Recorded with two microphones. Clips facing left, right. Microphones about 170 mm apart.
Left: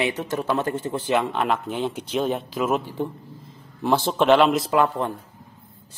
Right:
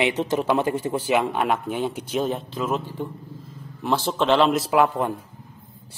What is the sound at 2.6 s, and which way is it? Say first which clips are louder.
A man's voice: left 4 dB; 15° left (ahead or behind).